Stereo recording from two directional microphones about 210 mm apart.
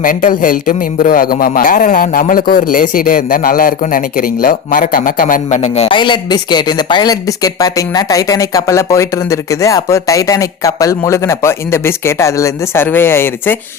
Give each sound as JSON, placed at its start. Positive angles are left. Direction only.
{"t": 0.0, "sound": "a man's voice", "side_deg": 40}